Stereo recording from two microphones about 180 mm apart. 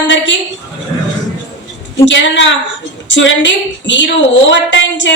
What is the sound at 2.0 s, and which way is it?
A woman's voice, 90° left.